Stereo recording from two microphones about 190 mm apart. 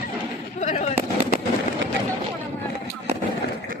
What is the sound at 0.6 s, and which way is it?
Fireworks, 35° left (ahead or behind).